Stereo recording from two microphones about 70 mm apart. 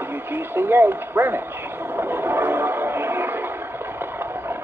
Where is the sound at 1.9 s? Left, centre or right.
Right.